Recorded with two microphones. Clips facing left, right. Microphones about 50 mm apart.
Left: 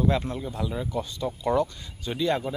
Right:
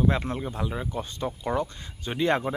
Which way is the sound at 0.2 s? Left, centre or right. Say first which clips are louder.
Even; right.